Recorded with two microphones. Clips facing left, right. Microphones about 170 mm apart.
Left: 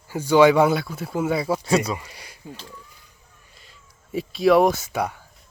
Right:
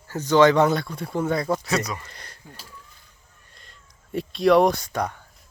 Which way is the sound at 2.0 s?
10° left (ahead or behind).